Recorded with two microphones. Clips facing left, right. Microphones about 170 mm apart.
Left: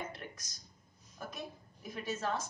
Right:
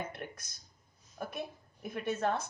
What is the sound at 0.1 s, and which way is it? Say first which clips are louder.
A woman's voice: right 3 dB; 60° right (ahead or behind).